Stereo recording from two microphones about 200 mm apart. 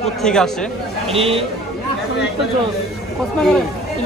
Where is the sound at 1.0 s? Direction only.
30° right (ahead or behind).